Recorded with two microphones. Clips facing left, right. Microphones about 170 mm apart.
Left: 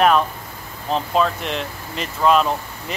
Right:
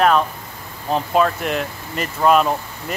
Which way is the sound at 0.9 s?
5° right (ahead or behind).